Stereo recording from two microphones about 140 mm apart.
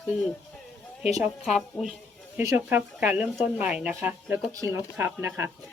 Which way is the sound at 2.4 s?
15° right (ahead or behind).